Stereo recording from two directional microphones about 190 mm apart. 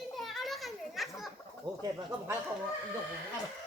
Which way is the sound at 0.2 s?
Centre (ahead or behind).